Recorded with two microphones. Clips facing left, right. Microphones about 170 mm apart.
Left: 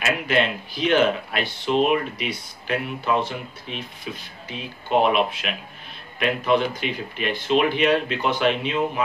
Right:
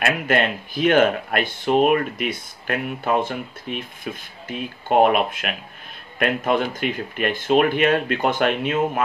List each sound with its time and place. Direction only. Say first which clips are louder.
0.0 s speech: right 2 dB; 50° right (ahead or behind)